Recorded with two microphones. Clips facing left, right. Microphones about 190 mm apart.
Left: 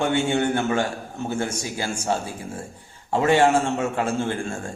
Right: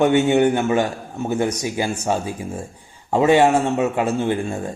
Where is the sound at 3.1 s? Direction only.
15° right (ahead or behind).